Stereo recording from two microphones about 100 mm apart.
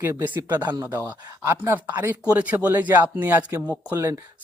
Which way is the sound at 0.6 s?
40° right (ahead or behind).